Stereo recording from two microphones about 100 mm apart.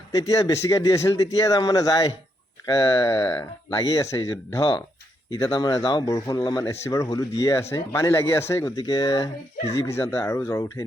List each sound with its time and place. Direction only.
0.1 s speech: 35° left (ahead or behind)
6.7 s speech: 30° left (ahead or behind)
8.8 s speech: 40° left (ahead or behind)
9.7 s speech: 30° left (ahead or behind)